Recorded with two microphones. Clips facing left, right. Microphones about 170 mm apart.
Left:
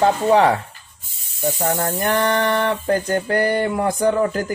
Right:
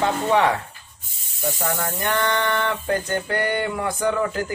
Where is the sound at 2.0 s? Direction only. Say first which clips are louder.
Left 3 dB; 35° left (ahead or behind).